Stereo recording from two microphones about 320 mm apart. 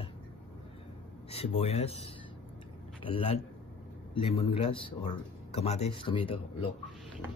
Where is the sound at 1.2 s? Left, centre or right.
Centre.